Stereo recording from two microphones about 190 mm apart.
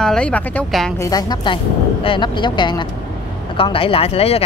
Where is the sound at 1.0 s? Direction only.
20° left (ahead or behind).